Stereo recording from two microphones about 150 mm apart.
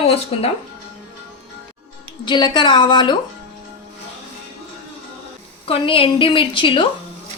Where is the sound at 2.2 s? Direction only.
30° left (ahead or behind).